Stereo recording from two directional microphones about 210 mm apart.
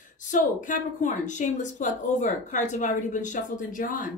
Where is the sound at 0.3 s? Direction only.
40° left (ahead or behind).